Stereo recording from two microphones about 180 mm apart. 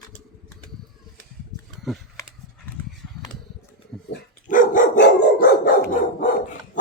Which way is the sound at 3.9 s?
Centre (ahead or behind).